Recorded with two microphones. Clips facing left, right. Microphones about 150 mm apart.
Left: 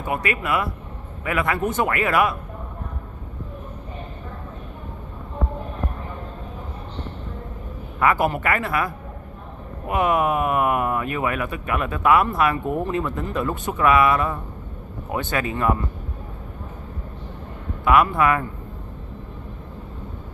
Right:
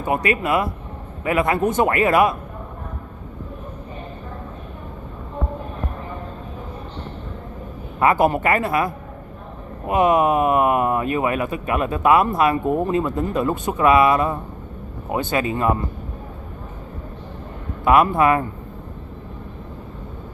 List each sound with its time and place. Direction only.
0.2 s speech: 30° right (ahead or behind)
8.0 s speech: 25° right (ahead or behind)
17.8 s speech: 30° right (ahead or behind)